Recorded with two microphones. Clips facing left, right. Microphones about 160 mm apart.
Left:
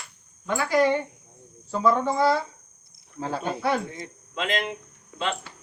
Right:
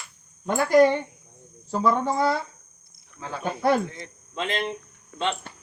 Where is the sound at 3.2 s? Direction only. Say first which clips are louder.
Left 5 dB; 35° left (ahead or behind).